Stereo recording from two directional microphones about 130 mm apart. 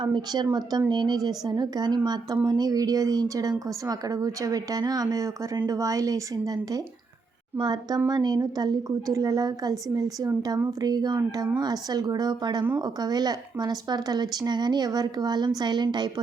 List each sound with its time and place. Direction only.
0.0 s speech: 35° right (ahead or behind)